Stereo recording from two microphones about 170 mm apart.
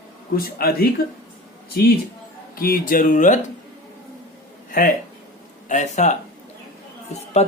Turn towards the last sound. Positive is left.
turn(degrees=40)  # may be behind; listen again after turning